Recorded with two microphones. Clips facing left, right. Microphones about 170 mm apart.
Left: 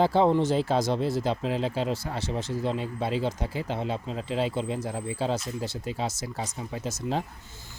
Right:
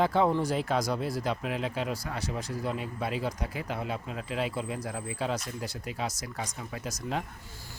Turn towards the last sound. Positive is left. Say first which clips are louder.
# right 1 dB
turn(degrees=25)  # may be behind; listen again after turning